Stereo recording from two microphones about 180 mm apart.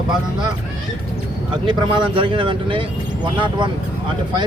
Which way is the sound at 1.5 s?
25° right (ahead or behind).